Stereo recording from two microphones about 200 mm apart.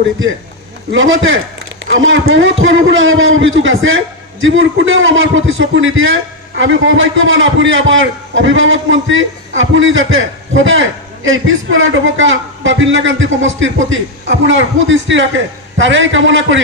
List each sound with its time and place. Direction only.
0.9 s a man's voice: 80° right